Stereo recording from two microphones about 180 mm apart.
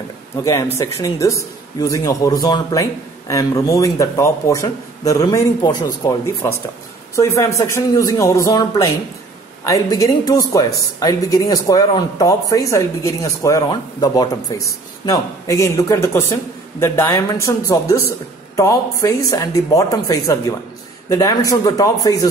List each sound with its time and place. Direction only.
0.4 s a man's voice: 15° left (ahead or behind)